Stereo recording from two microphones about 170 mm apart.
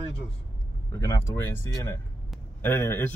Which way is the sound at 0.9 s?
15° left (ahead or behind).